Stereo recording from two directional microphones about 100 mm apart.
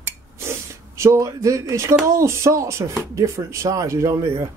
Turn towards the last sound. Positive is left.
turn(degrees=-25)  # may be behind; listen again after turning